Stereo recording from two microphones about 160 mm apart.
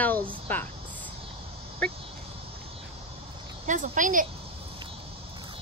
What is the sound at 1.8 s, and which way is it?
Speech, 5° left (ahead or behind).